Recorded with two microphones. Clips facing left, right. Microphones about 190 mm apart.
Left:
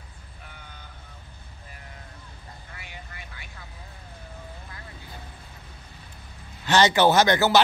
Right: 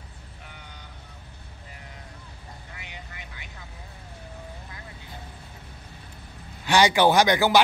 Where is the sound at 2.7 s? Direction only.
20° right (ahead or behind).